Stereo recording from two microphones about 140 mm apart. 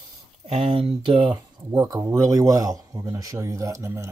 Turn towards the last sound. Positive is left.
turn(degrees=-20)  # may be behind; listen again after turning